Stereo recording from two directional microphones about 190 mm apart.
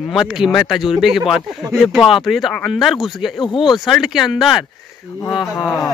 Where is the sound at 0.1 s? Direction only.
Centre (ahead or behind).